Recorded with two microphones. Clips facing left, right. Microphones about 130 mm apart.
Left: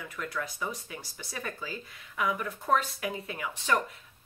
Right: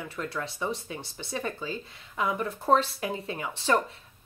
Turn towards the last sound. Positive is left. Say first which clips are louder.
# right 3 dB
turn(degrees=-30)  # may be behind; listen again after turning